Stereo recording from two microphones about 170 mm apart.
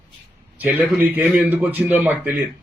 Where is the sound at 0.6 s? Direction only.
10° right (ahead or behind).